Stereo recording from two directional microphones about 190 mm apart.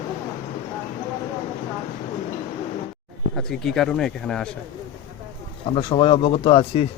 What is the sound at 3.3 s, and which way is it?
Speech, centre (ahead or behind).